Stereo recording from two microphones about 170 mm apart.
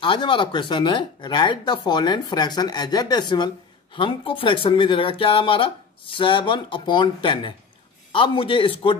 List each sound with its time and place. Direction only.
0.0 s speech: 30° left (ahead or behind)